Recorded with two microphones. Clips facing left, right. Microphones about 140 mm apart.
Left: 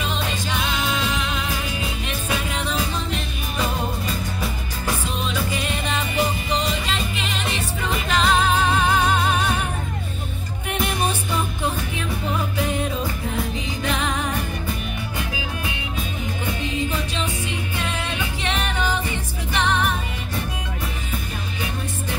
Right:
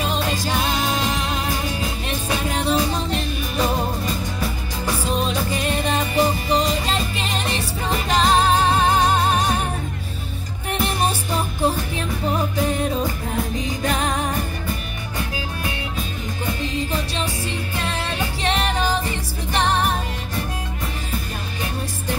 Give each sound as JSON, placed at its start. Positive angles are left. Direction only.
{"t": 0.0, "sound": "music", "side_deg": -40}
{"t": 5.1, "sound": "music", "side_deg": -40}
{"t": 10.7, "sound": "music", "side_deg": -35}
{"t": 13.8, "sound": "music", "side_deg": -40}
{"t": 16.6, "sound": "music", "side_deg": -35}